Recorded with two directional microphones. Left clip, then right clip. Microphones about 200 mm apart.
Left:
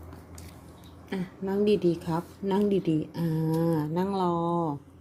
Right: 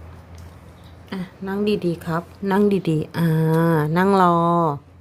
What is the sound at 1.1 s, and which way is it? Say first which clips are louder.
Speech: right 3 dB; 15° right (ahead or behind).